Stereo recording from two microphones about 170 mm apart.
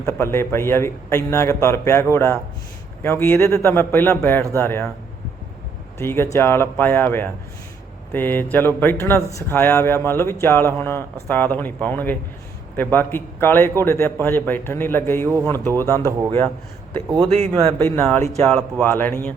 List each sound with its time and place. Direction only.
0.0 s speech: 15° left (ahead or behind)
6.0 s speech: 15° left (ahead or behind)
17.2 s speech: 35° right (ahead or behind)
17.7 s speech: 15° left (ahead or behind)